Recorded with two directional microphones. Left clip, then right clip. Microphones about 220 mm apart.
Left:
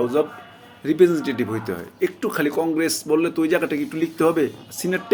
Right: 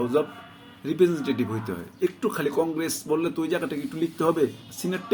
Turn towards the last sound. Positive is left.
turn(degrees=-5)  # may be behind; listen again after turning